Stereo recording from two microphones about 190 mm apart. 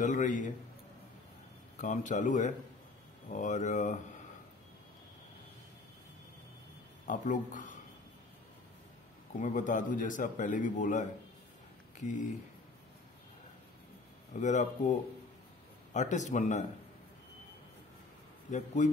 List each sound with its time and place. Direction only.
0.0 s a man's voice: 40° left (ahead or behind)
1.8 s speech: 40° left (ahead or behind)
7.1 s speech: 40° left (ahead or behind)
9.4 s speech: 40° left (ahead or behind)
14.3 s speech: 40° left (ahead or behind)
18.8 s speech: 40° left (ahead or behind)